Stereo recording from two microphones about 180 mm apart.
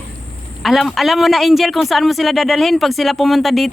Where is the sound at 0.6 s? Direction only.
Centre (ahead or behind).